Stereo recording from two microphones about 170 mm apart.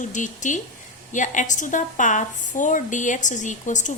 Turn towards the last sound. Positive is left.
turn(degrees=45)  # may be behind; listen again after turning